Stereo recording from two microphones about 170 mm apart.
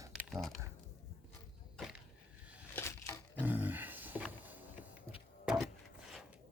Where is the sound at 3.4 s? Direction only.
10° right (ahead or behind).